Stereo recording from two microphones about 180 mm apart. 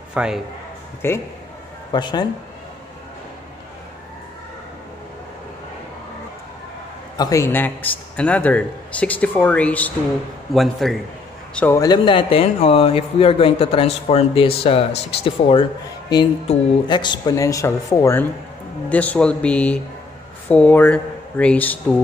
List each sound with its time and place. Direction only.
0.1 s a man's voice: 5° right (ahead or behind)
1.0 s speech: 15° left (ahead or behind)
1.9 s speech: 25° left (ahead or behind)
7.2 s a man's voice: 20° left (ahead or behind)
11.8 s speech: 25° left (ahead or behind); by 21.7 s 10° left (ahead or behind)